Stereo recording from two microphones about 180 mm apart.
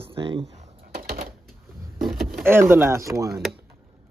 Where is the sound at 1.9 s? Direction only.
Centre (ahead or behind).